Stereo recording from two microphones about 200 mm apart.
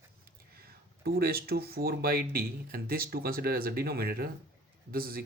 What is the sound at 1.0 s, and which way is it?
Speech, 50° right (ahead or behind).